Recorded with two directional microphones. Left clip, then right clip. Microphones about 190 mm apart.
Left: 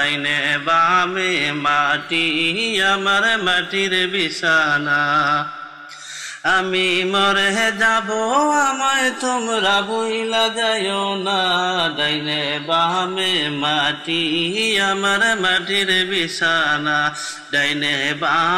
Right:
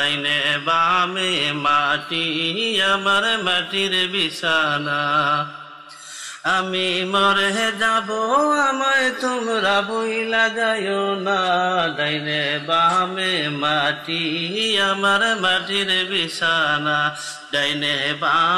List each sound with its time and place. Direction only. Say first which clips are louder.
0.0 s mantra: left 1 dB; 15° left (ahead or behind)
6.4 s mantra: left 3 dB; 20° left (ahead or behind)
11.2 s mantra: left 1 dB; 15° left (ahead or behind)